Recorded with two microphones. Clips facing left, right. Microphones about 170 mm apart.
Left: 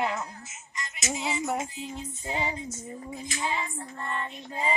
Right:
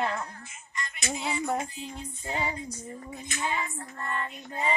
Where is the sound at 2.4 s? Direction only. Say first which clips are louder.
Even; 20° left (ahead or behind).